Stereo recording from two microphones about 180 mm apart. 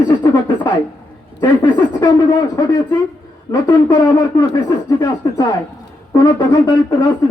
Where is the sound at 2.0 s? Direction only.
20° left (ahead or behind).